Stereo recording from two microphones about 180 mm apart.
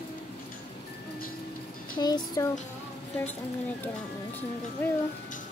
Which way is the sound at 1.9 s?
25° left (ahead or behind).